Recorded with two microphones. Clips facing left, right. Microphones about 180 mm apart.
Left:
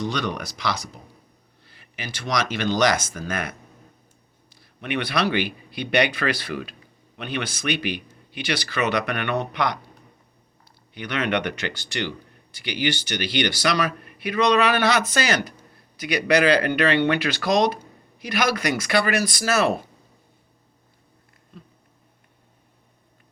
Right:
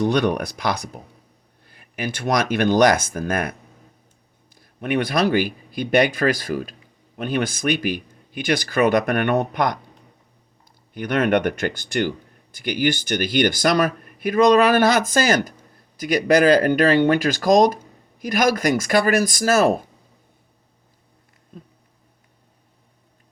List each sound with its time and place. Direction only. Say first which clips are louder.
0.0 s speech: right 8 dB; 55° right (ahead or behind)
4.5 s speech: right 5 dB; 50° right (ahead or behind)
10.9 s speech: right 6 dB; 50° right (ahead or behind)